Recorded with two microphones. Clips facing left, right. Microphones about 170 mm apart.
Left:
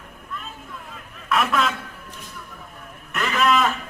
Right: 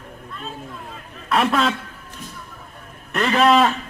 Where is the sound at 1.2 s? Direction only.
35° right (ahead or behind).